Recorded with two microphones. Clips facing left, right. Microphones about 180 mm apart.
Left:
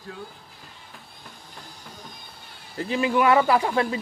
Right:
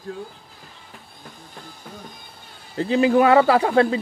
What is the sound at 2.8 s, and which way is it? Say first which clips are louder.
Speech: right 6 dB; 30° right (ahead or behind).